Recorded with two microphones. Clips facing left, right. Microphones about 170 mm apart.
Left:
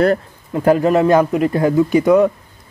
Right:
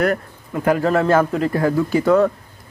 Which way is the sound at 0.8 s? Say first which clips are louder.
Left 3 dB; 15° left (ahead or behind).